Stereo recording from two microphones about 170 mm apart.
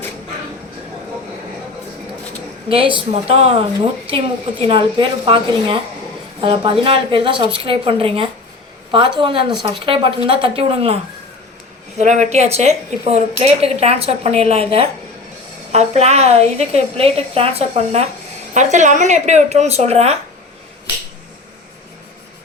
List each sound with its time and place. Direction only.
2.6 s a woman's voice: 30° right (ahead or behind)
4.6 s a woman's voice: 30° right (ahead or behind)